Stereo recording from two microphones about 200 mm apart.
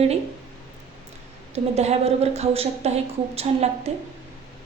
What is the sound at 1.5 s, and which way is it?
A woman's voice, 30° right (ahead or behind).